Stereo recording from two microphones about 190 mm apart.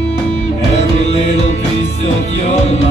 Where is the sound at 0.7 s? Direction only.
35° left (ahead or behind).